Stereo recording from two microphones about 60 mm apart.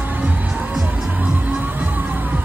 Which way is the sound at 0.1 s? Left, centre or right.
Right.